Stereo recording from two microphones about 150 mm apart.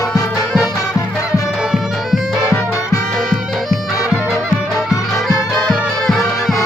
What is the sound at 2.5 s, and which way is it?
Music, 20° left (ahead or behind).